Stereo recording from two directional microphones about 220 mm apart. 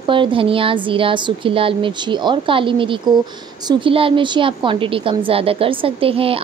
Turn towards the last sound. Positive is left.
turn(degrees=-25)  # may be behind; listen again after turning